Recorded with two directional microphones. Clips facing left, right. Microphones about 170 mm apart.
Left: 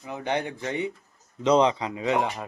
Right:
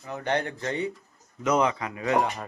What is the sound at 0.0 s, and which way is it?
Speech, 10° left (ahead or behind).